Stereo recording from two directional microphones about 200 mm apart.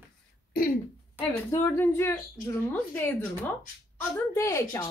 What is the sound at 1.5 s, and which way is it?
A woman's voice, 10° left (ahead or behind).